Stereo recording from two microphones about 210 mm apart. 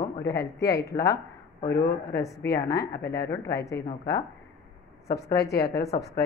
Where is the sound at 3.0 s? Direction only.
50° left (ahead or behind).